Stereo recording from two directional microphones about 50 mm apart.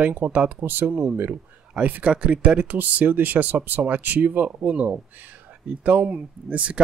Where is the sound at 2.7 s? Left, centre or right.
Right.